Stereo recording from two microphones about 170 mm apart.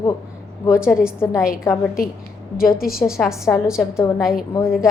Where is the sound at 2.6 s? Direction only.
60° left (ahead or behind).